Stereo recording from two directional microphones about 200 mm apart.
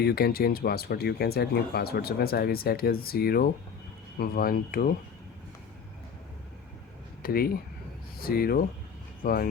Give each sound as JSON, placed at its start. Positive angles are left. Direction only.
{"t": 0.0, "sound": "speech", "side_deg": 50}
{"t": 7.2, "sound": "speech", "side_deg": 50}